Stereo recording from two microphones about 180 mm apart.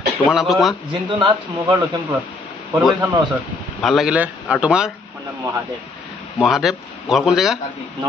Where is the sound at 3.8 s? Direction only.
Centre (ahead or behind).